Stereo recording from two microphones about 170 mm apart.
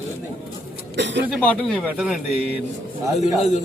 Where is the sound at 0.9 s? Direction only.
90° right.